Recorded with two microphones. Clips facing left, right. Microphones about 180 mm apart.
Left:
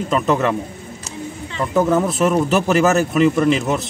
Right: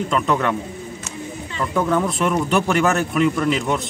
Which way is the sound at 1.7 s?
25° left (ahead or behind).